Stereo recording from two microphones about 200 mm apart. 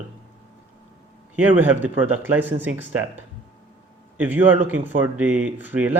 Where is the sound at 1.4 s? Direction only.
10° right (ahead or behind).